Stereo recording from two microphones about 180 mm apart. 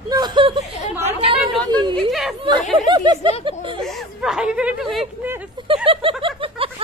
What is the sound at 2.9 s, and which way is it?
Speech, 25° right (ahead or behind).